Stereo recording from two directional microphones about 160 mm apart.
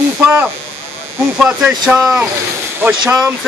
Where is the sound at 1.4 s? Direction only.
5° right (ahead or behind).